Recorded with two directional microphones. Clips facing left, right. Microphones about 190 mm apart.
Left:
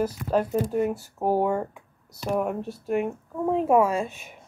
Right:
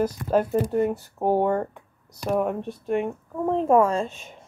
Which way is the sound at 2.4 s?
5° left (ahead or behind).